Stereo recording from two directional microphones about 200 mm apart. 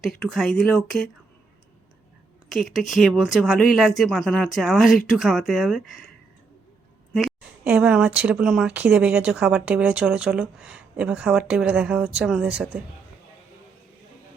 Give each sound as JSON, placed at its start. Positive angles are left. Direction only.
{"t": 0.0, "sound": "speech", "side_deg": 0}
{"t": 2.5, "sound": "speech", "side_deg": 0}
{"t": 7.1, "sound": "speech", "side_deg": 0}